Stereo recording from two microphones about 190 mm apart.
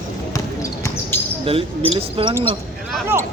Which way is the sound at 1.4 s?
30° right (ahead or behind).